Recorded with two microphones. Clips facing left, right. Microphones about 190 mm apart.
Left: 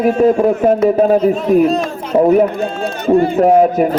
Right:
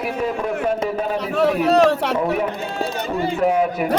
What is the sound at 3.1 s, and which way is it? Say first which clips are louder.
Speech: left 9 dB; 45° left (ahead or behind).